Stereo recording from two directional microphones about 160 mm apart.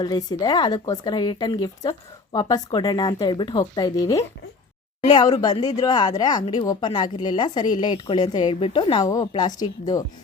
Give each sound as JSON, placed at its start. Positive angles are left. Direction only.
{"t": 0.0, "sound": "a woman's voice", "side_deg": 25}